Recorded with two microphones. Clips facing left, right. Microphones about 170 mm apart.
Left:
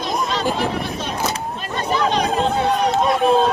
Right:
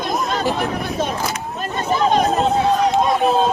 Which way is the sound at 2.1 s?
45° right (ahead or behind).